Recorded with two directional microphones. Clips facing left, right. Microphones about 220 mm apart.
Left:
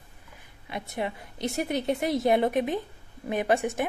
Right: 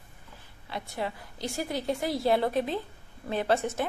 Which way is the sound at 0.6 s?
20° left (ahead or behind).